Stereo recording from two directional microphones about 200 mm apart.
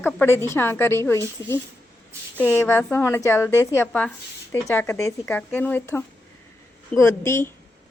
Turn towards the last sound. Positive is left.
turn(degrees=15)  # may be behind; listen again after turning